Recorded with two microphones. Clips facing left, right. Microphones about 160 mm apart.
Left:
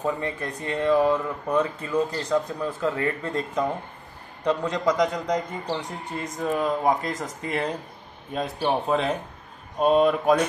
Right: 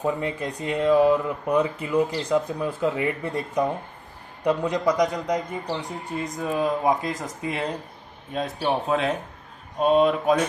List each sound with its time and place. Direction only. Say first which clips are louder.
0.0 s speech: right 2 dB; 15° right (ahead or behind)
8.3 s speech: even; centre (ahead or behind)